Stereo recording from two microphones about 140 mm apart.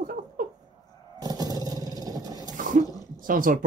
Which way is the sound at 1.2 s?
25° right (ahead or behind).